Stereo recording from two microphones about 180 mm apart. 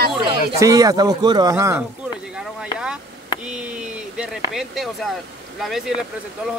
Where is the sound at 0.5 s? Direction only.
20° right (ahead or behind).